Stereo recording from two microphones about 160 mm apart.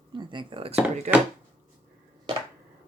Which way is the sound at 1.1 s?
45° right (ahead or behind).